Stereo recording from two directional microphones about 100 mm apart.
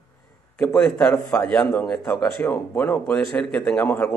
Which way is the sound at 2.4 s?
20° left (ahead or behind).